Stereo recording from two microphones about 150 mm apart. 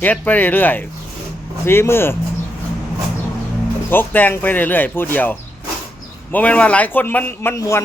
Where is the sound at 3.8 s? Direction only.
15° left (ahead or behind).